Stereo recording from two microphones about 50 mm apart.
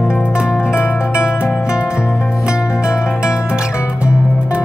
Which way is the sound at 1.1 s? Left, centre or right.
Right.